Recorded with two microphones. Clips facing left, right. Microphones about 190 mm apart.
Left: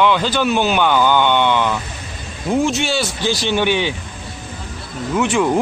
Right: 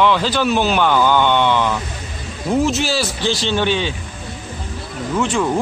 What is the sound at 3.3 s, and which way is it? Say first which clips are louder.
Speech: left 1 dB; 15° left (ahead or behind).